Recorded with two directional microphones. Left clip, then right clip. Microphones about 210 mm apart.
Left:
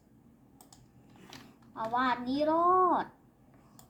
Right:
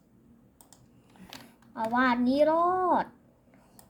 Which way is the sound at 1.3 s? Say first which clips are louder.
Right 4 dB; 55° right (ahead or behind).